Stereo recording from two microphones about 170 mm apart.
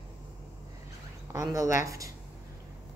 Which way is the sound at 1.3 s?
20° right (ahead or behind).